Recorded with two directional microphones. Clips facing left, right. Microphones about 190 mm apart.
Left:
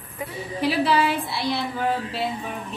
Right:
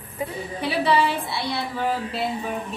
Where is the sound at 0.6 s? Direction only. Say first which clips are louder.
Even; centre (ahead or behind).